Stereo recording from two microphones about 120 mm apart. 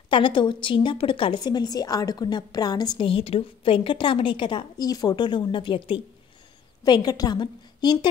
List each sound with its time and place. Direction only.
0.1 s a woman's voice: 40° left (ahead or behind)
3.1 s a woman's voice: 50° left (ahead or behind)